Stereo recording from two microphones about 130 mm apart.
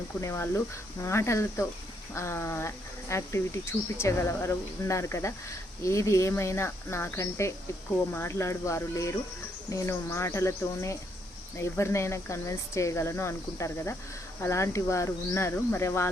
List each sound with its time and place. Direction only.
0.2 s speech: 20° left (ahead or behind)